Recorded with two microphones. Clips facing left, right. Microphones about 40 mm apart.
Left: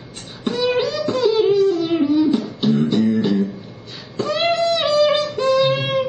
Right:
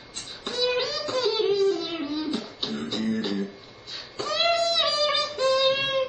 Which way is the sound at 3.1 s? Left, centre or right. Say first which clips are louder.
Left 9 dB; centre.